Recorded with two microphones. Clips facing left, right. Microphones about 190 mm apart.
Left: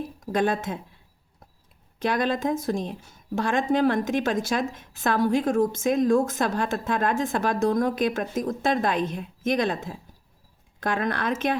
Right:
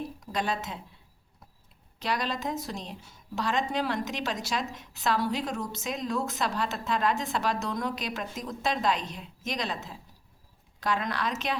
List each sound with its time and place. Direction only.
0.2 s speech: 50° left (ahead or behind)
2.0 s speech: 50° left (ahead or behind)